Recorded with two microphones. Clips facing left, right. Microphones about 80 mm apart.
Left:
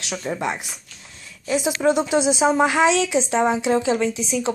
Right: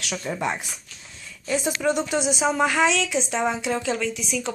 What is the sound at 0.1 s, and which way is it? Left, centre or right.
Speech, centre.